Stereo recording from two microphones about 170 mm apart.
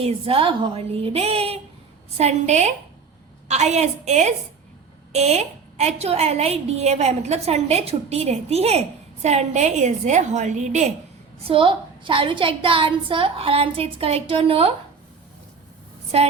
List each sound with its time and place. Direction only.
0.0 s a woman's voice: 35° right (ahead or behind)
11.4 s a woman's voice: 30° right (ahead or behind)
16.1 s a woman's voice: 35° right (ahead or behind)